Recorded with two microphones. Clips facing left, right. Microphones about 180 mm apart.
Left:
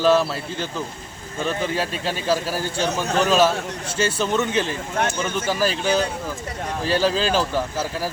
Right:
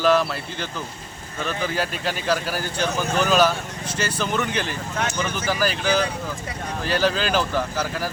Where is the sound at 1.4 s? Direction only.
30° left (ahead or behind).